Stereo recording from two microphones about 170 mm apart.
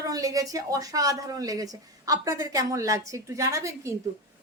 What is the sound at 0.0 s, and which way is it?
A woman's voice, 20° right (ahead or behind).